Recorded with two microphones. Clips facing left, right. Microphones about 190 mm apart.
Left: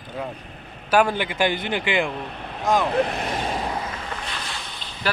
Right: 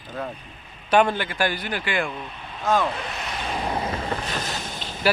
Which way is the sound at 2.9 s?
60° left (ahead or behind).